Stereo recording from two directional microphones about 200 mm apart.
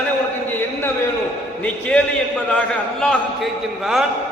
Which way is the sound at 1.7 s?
5° left (ahead or behind).